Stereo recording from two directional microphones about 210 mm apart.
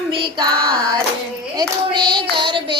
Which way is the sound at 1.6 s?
20° right (ahead or behind).